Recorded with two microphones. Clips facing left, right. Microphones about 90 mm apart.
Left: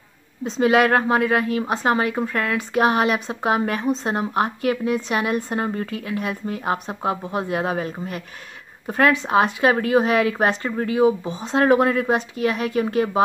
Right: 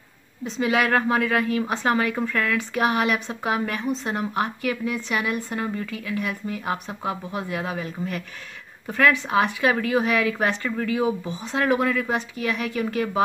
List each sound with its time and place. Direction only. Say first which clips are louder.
0.5 s speech: left 5 dB; 35° left (ahead or behind)